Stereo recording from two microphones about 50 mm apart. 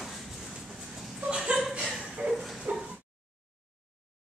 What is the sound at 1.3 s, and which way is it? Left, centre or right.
Chuckle, centre.